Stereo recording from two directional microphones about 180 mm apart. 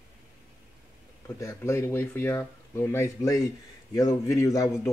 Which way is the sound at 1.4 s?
15° left (ahead or behind).